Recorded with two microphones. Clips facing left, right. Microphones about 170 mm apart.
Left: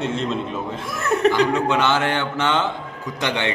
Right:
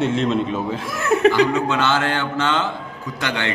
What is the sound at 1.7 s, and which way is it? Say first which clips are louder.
Mantra: even; 15° left (ahead or behind).